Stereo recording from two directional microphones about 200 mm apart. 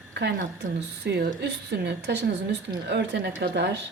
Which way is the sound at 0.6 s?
55° right (ahead or behind).